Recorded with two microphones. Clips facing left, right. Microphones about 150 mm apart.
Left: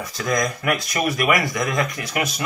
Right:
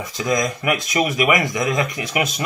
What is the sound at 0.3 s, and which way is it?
Speech, 20° right (ahead or behind).